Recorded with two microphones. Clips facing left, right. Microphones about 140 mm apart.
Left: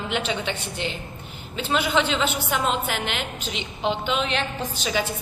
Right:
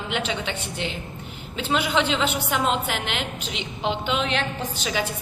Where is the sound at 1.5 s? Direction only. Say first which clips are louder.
Even; 15° right (ahead or behind).